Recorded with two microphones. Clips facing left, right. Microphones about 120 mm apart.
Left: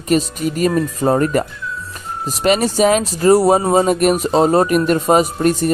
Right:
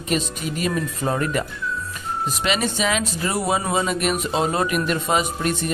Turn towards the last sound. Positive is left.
turn(degrees=40)  # may be behind; listen again after turning